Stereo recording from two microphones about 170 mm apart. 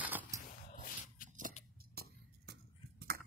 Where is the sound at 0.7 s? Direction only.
50° left (ahead or behind).